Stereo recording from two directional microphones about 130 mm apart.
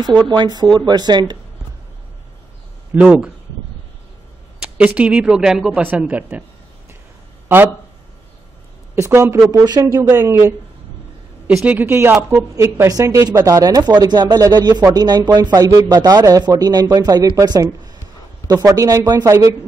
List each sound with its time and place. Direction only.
0.0 s speech: 35° right (ahead or behind)
2.9 s speech: 10° right (ahead or behind)
4.6 s speech: 10° right (ahead or behind)
7.4 s speech: 15° right (ahead or behind)
8.9 s a woman's voice: 25° right (ahead or behind)